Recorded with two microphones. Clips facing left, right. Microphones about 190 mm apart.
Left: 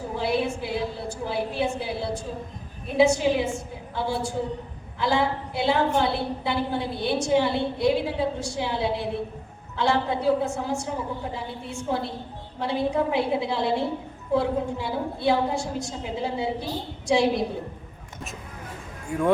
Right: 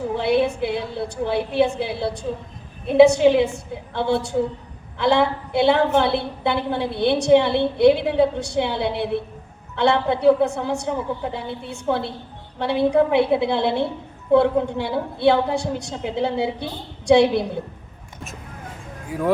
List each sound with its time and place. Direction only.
0.2 s a woman's voice: 65° right (ahead or behind)
19.0 s speech: 5° right (ahead or behind)